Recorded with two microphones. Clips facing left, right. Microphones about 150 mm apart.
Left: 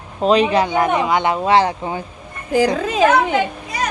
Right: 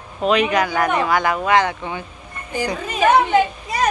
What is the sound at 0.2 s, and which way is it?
Speech, 35° left (ahead or behind).